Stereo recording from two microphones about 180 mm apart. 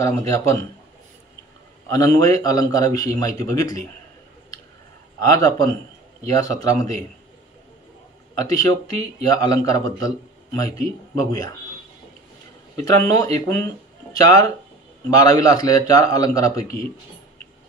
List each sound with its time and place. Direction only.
0.0 s speech: 15° left (ahead or behind)
1.9 s a man's voice: 20° left (ahead or behind)
5.2 s a man's voice: 20° left (ahead or behind)
9.2 s a man's voice: 20° left (ahead or behind)
12.7 s a man's voice: 15° left (ahead or behind)